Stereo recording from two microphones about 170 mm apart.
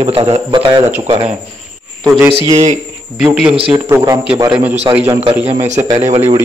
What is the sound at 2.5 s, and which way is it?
A man's voice, 40° right (ahead or behind).